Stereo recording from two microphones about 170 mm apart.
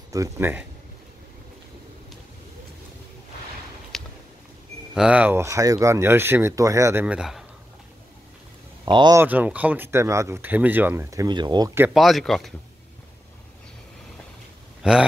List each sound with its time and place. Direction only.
0.1 s speech: 15° right (ahead or behind)
3.9 s a sound: centre (ahead or behind)
4.9 s speech: 5° right (ahead or behind)
8.8 s speech: 25° right (ahead or behind)
9.2 s speech: 10° right (ahead or behind)
11.8 s speech: centre (ahead or behind)
14.8 s a sound: 5° right (ahead or behind)